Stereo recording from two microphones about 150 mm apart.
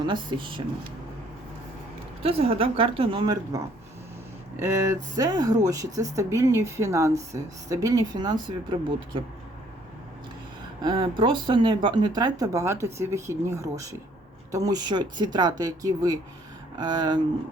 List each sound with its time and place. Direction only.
0.0 s speech: 30° right (ahead or behind)
2.2 s speech: 40° right (ahead or behind)
4.6 s speech: 20° right (ahead or behind)
10.8 s speech: 35° right (ahead or behind)